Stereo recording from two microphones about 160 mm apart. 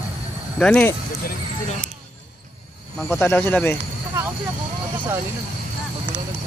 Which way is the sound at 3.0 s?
15° left (ahead or behind).